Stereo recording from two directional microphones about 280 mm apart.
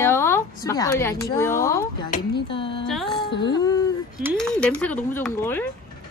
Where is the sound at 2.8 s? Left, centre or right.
Centre.